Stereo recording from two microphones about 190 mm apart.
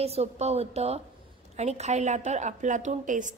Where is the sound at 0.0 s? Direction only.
35° right (ahead or behind).